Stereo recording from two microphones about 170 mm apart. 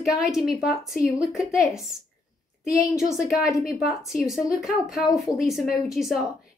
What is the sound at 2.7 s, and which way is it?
Speech, 20° left (ahead or behind).